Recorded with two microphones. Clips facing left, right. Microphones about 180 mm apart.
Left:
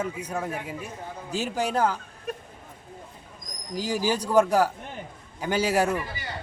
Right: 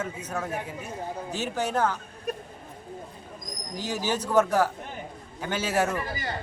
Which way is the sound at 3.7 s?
10° left (ahead or behind).